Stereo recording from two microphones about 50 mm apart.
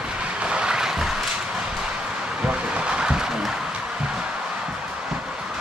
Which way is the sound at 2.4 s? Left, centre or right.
Centre.